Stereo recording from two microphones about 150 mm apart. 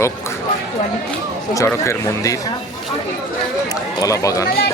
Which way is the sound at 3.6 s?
25° left (ahead or behind).